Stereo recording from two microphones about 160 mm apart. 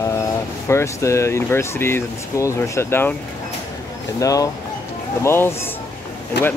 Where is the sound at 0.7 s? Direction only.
20° left (ahead or behind).